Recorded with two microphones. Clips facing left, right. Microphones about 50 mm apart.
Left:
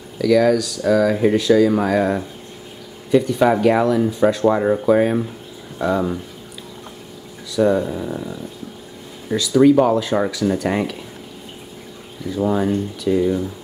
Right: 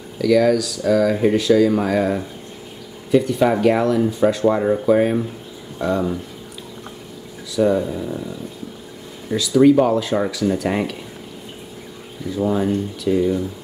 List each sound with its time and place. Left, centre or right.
0.2 s speech: centre
7.5 s speech: centre
8.0 s speech: centre
9.3 s speech: centre
12.5 s speech: centre